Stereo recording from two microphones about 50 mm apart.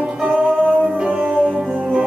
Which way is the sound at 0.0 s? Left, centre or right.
Centre.